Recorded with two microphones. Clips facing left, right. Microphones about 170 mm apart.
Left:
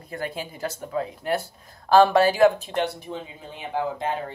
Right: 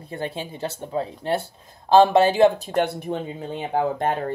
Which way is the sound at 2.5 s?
40° right (ahead or behind).